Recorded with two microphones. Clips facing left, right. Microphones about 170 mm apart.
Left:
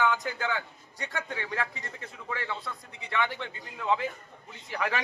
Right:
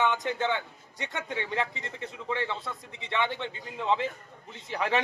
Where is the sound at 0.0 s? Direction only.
25° right (ahead or behind).